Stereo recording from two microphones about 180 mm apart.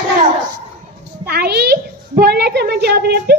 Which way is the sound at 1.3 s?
60° right (ahead or behind).